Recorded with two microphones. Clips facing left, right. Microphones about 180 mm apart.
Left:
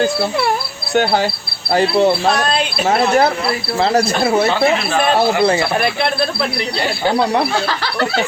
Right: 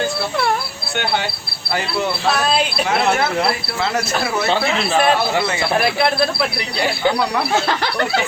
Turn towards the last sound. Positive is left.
turn(degrees=-5)  # may be behind; listen again after turning